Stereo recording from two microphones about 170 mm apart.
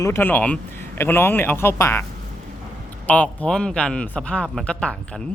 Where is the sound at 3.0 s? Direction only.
5° left (ahead or behind).